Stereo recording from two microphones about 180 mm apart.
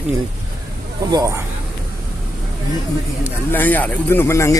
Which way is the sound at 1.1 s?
20° right (ahead or behind).